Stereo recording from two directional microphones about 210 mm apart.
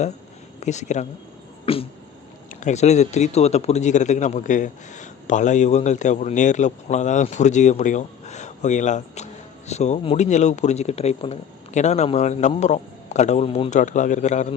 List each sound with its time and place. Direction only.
0.6 s a man's voice: 35° left (ahead or behind)
1.6 s a sound: 25° left (ahead or behind)
2.5 s a man's voice: 35° left (ahead or behind)